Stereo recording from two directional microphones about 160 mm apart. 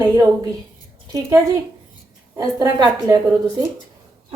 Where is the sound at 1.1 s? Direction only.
20° right (ahead or behind).